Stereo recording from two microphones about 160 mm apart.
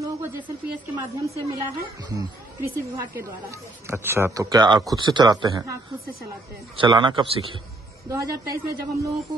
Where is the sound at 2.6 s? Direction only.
20° right (ahead or behind).